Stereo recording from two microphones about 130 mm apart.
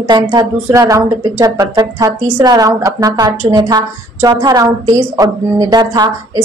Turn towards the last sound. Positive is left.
turn(degrees=-35)  # may be behind; listen again after turning